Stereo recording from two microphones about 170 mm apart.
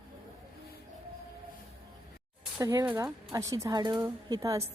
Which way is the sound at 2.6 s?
20° right (ahead or behind).